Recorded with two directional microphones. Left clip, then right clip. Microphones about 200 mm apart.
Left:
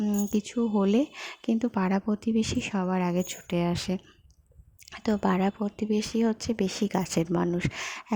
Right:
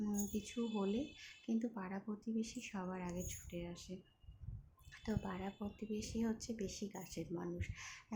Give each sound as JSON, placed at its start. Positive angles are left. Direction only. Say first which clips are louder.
{"t": 0.0, "sound": "speech", "louder": "left 14 dB", "side_deg": 35}
{"t": 4.9, "sound": "speech", "louder": "left 18 dB", "side_deg": 40}